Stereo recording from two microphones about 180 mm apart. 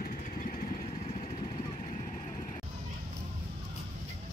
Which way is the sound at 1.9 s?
40° left (ahead or behind).